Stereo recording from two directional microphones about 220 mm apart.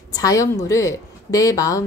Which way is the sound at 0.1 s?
15° left (ahead or behind).